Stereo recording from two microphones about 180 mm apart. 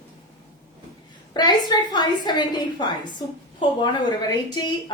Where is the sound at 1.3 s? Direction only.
25° left (ahead or behind).